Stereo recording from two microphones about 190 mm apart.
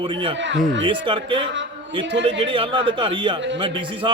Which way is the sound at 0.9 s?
25° right (ahead or behind).